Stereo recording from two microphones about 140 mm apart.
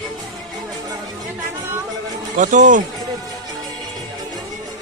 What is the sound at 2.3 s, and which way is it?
Speech, 65° right (ahead or behind).